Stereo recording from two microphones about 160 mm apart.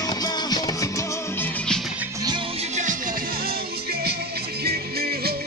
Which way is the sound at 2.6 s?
50° right (ahead or behind).